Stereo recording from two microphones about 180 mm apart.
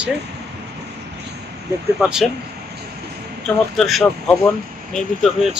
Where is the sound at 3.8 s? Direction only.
Centre (ahead or behind).